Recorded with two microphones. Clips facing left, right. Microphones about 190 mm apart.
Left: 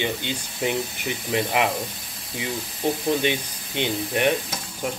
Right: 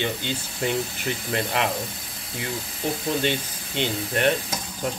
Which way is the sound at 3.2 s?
15° left (ahead or behind).